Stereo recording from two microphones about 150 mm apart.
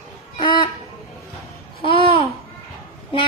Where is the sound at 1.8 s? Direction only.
35° left (ahead or behind).